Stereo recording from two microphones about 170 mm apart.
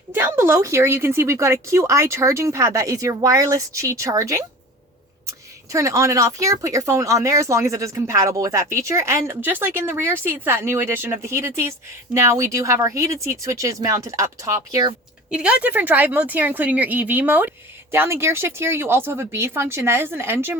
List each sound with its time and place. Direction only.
0.1 s speech: 15° right (ahead or behind)
5.7 s speech: 20° right (ahead or behind)
15.3 s speech: 5° right (ahead or behind)